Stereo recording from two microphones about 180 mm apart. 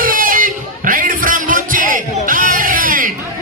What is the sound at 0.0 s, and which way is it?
Music, 50° right (ahead or behind).